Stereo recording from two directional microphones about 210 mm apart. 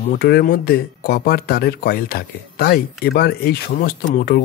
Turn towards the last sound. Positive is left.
turn(degrees=45)  # may be behind; listen again after turning